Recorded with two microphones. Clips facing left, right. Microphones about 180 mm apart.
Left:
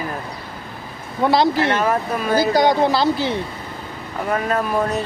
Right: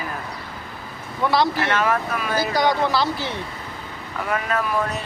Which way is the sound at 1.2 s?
30° left (ahead or behind).